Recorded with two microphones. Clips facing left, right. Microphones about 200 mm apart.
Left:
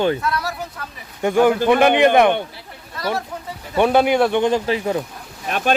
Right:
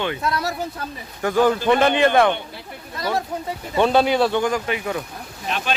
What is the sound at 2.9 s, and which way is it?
Speech, 20° right (ahead or behind).